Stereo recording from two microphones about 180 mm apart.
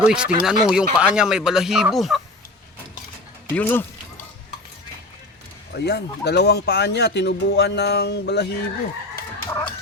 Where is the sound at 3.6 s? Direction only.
10° left (ahead or behind).